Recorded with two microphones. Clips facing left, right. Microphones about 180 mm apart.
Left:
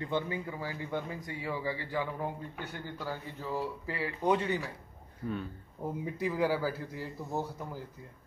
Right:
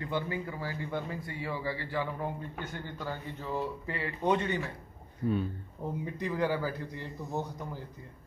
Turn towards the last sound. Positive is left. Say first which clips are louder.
# even
turn(degrees=5)  # may be behind; listen again after turning